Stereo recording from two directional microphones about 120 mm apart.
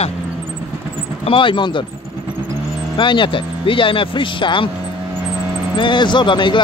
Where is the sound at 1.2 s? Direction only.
45° left (ahead or behind).